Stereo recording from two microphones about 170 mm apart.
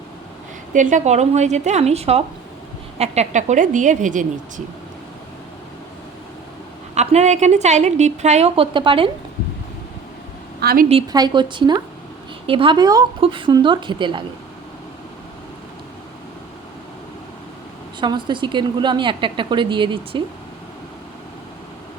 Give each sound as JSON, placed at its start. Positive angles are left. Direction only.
{"t": 0.7, "sound": "a woman's voice", "side_deg": -45}
{"t": 6.9, "sound": "a woman's voice", "side_deg": -40}
{"t": 10.6, "sound": "a woman's voice", "side_deg": -65}
{"t": 11.1, "sound": "a woman's voice", "side_deg": -25}
{"t": 18.0, "sound": "a woman's voice", "side_deg": -25}